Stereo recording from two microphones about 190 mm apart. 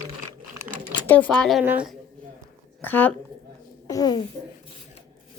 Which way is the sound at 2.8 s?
10° left (ahead or behind).